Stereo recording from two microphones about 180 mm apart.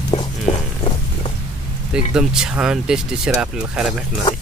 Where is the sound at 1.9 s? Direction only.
5° right (ahead or behind).